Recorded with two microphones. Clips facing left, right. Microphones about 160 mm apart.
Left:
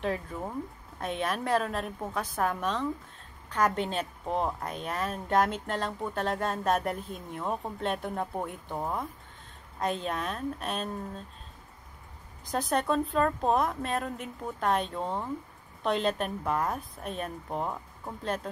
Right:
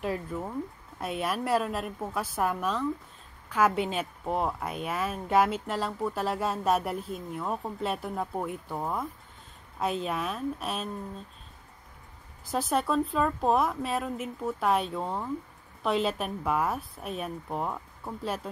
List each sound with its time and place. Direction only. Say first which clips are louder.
0.0 s speech: even; 5° right (ahead or behind)
12.4 s speech: even; 5° right (ahead or behind)